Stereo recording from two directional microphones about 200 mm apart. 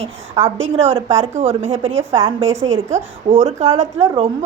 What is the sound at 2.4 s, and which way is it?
Speech, 70° right (ahead or behind).